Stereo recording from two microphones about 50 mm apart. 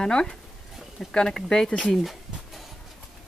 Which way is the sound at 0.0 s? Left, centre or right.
Centre.